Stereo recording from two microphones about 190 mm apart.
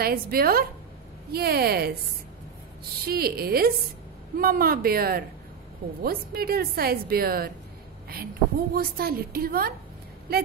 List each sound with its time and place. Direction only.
0.0 s a woman's voice: 55° right (ahead or behind)
3.0 s a woman's voice: 55° right (ahead or behind)
8.7 s a woman's voice: 50° right (ahead or behind)